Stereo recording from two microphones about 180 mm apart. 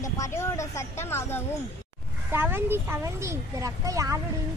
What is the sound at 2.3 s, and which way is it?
Speech, 10° right (ahead or behind).